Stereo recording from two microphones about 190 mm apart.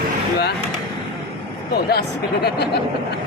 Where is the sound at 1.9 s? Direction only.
60° left (ahead or behind).